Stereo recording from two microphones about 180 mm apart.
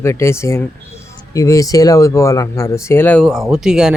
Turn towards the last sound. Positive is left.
turn(degrees=-5)  # may be behind; listen again after turning